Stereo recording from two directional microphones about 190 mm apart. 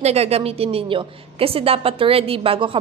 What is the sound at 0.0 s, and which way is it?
A woman's voice, 35° right (ahead or behind).